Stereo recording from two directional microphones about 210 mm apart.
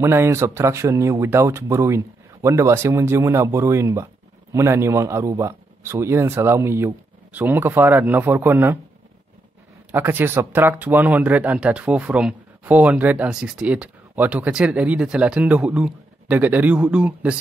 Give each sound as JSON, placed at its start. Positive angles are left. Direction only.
{"t": 0.0, "sound": "speech", "side_deg": -10}
{"t": 9.8, "sound": "speech", "side_deg": -10}